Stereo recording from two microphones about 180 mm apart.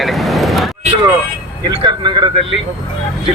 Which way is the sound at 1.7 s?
25° right (ahead or behind).